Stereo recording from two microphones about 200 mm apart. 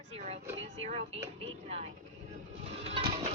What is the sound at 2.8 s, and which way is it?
Music, 30° right (ahead or behind).